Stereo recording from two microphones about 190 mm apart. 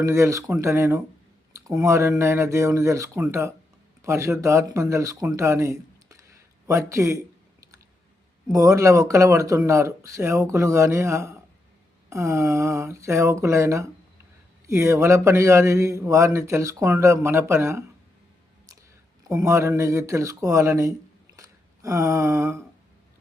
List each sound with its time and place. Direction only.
0.0 s speech: 15° right (ahead or behind)
8.5 s speech: 15° right (ahead or behind)
19.3 s speech: 15° right (ahead or behind)
21.3 s a sound: 15° right (ahead or behind)